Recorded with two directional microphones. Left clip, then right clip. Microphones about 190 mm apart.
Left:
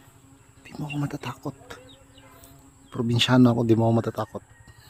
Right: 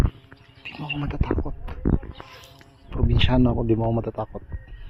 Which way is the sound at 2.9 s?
30° left (ahead or behind).